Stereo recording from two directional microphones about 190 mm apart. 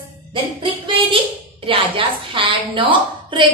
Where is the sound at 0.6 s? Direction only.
25° right (ahead or behind).